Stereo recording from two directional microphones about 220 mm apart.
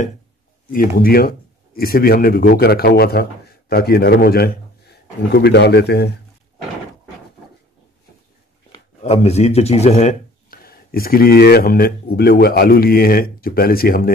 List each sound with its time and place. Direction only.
0.7 s speech: 40° left (ahead or behind)
9.0 s speech: 30° left (ahead or behind)